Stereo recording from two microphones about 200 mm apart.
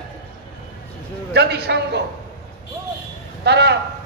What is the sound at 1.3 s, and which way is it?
Speech, 55° right (ahead or behind).